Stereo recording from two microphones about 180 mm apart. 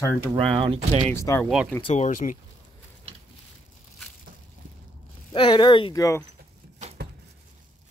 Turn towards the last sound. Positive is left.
turn(degrees=-40)  # may be behind; listen again after turning